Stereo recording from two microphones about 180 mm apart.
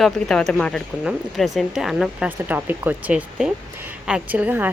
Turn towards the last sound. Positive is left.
turn(degrees=-10)  # may be behind; listen again after turning